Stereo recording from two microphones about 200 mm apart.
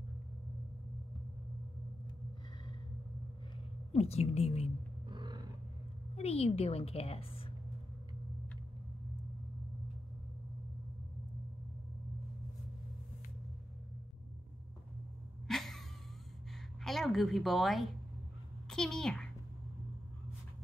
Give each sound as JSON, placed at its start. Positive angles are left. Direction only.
{"t": 3.9, "sound": "a woman's voice", "side_deg": 30}
{"t": 5.1, "sound": "rumble", "side_deg": -20}
{"t": 6.1, "sound": "a woman's voice", "side_deg": 30}
{"t": 15.4, "sound": "a sound", "side_deg": 0}
{"t": 16.8, "sound": "a child's voice", "side_deg": 0}